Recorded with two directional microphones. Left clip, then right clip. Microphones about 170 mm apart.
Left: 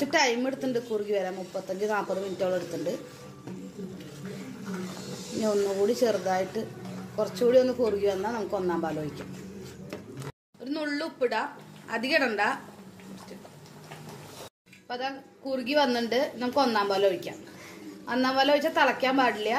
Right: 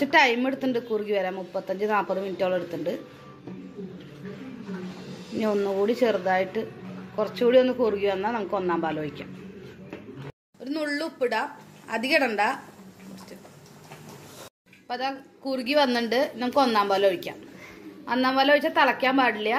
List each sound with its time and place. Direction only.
0.0 s a woman's voice: 5° right (ahead or behind)
5.4 s a man's voice: 5° right (ahead or behind)
10.6 s a woman's voice: 15° right (ahead or behind)
14.9 s a woman's voice: 10° right (ahead or behind)